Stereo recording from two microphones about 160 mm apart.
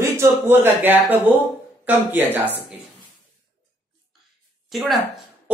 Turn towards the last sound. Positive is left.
turn(degrees=0)  # may be behind; listen again after turning